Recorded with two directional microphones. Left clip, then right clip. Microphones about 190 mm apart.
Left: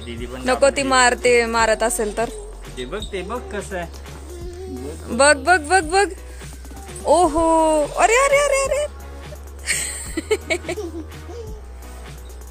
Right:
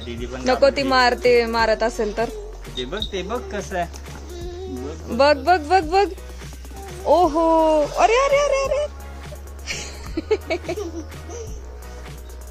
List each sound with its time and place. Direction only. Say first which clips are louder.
0.0 s speech: right 1 dB; 50° right (ahead or behind)
0.5 s speech: even; 5° right (ahead or behind)
2.8 s speech: right 1 dB; 50° right (ahead or behind)
5.0 s speech: left 1 dB; centre (ahead or behind)
9.7 s a sound: left 6 dB; centre (ahead or behind)